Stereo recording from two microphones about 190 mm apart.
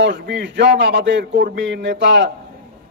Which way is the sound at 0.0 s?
65° right (ahead or behind).